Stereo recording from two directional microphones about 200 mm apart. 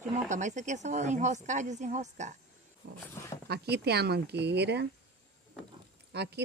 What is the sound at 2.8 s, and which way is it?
Speech, 55° right (ahead or behind).